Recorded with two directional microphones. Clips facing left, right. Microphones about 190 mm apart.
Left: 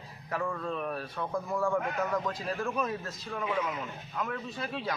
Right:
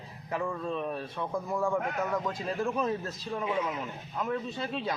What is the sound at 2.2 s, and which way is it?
Speech, 20° right (ahead or behind).